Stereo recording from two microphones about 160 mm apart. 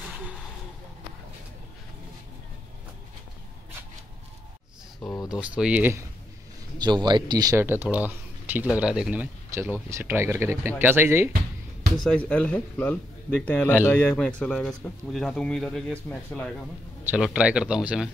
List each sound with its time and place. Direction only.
5.1 s speech: 25° left (ahead or behind)
5.4 s speech: 10° right (ahead or behind)
6.8 s speech: 25° right (ahead or behind)
12.0 s speech: 5° left (ahead or behind)
17.0 s speech: 5° right (ahead or behind)